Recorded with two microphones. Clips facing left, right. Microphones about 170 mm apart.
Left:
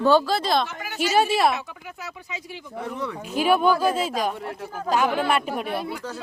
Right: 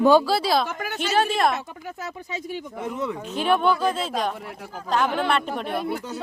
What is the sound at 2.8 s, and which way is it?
Speech, 20° right (ahead or behind).